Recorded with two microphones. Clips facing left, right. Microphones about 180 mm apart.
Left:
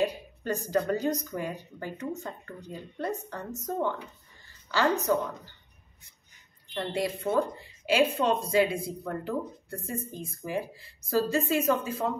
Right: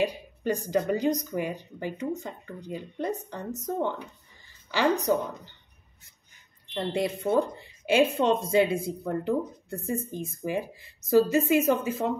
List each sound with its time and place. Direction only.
0.0 s speech: 15° right (ahead or behind)
4.6 s speech: 15° right (ahead or behind)
6.7 s speech: 20° right (ahead or behind)